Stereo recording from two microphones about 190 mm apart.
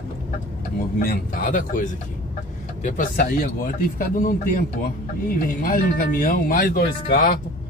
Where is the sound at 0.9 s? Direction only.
50° left (ahead or behind).